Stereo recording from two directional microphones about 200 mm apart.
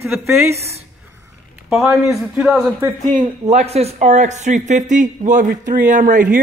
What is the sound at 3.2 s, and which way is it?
Speech, 35° right (ahead or behind).